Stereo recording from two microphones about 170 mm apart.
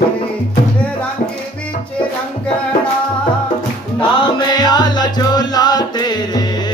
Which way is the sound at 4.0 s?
25° left (ahead or behind).